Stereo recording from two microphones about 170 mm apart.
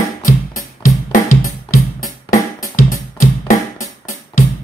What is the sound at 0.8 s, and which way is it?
Music, 55° left (ahead or behind).